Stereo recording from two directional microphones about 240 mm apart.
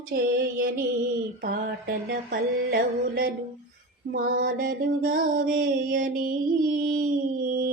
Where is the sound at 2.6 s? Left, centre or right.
Right.